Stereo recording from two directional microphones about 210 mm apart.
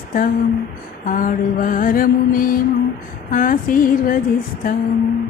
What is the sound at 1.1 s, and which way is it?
Mantra, 40° left (ahead or behind).